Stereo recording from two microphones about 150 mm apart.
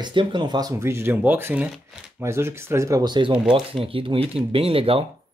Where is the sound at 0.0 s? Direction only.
30° right (ahead or behind).